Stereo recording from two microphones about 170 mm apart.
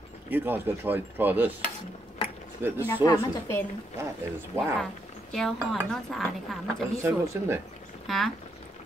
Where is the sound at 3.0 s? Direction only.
20° left (ahead or behind).